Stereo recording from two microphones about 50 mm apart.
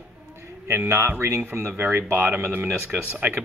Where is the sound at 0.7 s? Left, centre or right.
Right.